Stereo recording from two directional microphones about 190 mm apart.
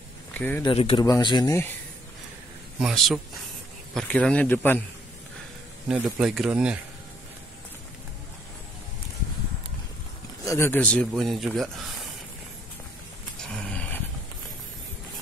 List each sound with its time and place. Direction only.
0.3 s a sound: 10° left (ahead or behind)
0.6 s a man's voice: 30° left (ahead or behind)
2.8 s a man's voice: centre (ahead or behind)
5.9 s a man's voice: 5° right (ahead or behind)
10.4 s a man's voice: 15° left (ahead or behind); by 11.7 s centre (ahead or behind)
13.5 s a sound: 5° left (ahead or behind)